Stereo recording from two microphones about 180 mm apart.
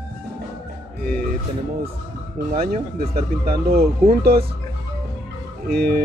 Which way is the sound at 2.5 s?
55° right (ahead or behind).